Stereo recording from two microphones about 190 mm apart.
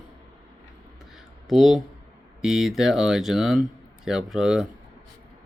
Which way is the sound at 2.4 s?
Centre (ahead or behind).